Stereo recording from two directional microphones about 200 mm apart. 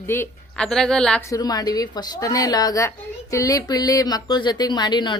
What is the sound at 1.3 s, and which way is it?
A woman's voice, 20° left (ahead or behind).